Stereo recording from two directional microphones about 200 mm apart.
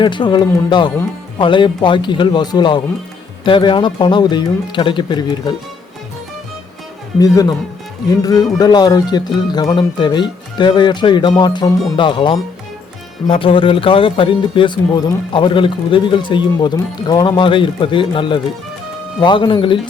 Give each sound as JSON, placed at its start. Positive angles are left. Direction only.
{"t": 0.0, "sound": "speech", "side_deg": 25}
{"t": 7.2, "sound": "speech", "side_deg": 15}